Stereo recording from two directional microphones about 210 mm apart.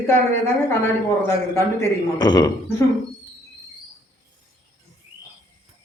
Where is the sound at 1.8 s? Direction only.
20° left (ahead or behind).